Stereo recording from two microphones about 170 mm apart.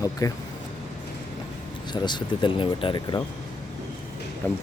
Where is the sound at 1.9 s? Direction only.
25° left (ahead or behind).